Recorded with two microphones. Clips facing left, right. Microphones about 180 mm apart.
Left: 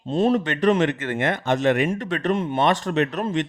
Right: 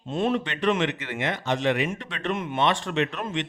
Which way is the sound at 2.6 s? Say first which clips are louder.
Left 2 dB; 45° left (ahead or behind).